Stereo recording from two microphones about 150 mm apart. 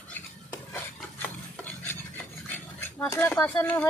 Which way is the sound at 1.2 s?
10° left (ahead or behind).